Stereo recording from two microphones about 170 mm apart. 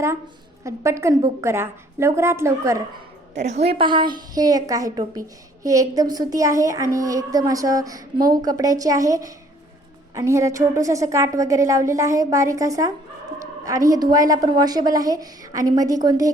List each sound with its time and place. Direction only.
0.6 s a woman's voice: 15° right (ahead or behind)
3.3 s a woman's voice: 40° right (ahead or behind); by 16.3 s 20° right (ahead or behind)